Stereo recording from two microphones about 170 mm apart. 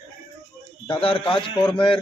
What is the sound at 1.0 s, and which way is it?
Speech, 30° left (ahead or behind).